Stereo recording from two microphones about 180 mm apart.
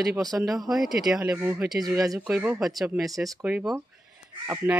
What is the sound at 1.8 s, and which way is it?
Speech, 20° right (ahead or behind).